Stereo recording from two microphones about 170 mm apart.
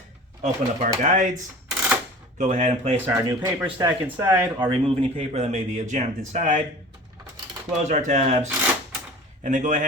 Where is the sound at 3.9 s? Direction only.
10° right (ahead or behind).